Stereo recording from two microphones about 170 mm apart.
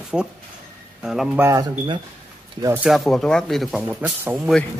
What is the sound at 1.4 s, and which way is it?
Speech, 20° right (ahead or behind).